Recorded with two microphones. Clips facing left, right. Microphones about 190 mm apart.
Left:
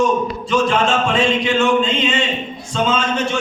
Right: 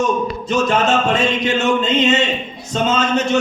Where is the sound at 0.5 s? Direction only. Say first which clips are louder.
Right 1 dB; 40° right (ahead or behind).